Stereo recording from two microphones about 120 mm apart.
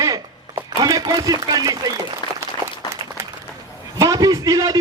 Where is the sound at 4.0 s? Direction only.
30° right (ahead or behind).